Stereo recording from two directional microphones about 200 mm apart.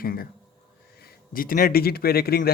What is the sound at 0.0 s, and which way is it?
A man's voice, 45° left (ahead or behind).